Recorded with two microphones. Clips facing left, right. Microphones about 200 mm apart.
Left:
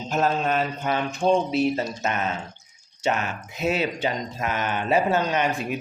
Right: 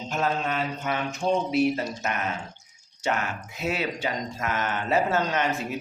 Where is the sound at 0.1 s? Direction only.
40° left (ahead or behind).